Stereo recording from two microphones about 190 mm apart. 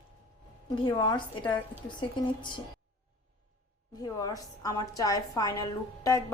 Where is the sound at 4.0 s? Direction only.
20° left (ahead or behind).